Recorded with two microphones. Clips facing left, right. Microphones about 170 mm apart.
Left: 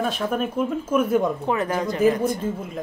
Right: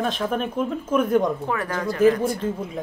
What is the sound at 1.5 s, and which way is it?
Speech, 20° left (ahead or behind).